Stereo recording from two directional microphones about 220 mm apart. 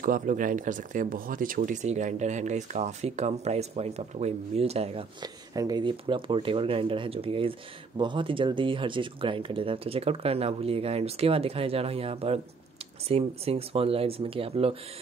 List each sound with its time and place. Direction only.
0.0 s speech: 35° right (ahead or behind)